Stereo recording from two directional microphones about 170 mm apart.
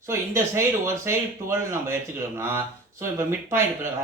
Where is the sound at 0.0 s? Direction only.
15° right (ahead or behind).